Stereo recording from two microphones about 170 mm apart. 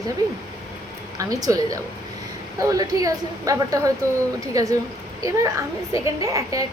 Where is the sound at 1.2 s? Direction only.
20° right (ahead or behind).